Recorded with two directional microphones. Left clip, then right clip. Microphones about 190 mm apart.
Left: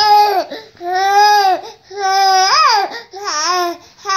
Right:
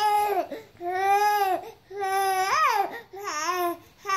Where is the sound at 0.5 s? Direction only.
25° right (ahead or behind).